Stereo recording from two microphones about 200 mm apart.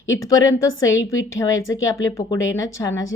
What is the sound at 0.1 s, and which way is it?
Speech, 15° left (ahead or behind).